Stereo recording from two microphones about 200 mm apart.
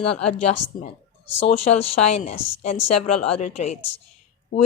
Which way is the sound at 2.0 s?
30° left (ahead or behind).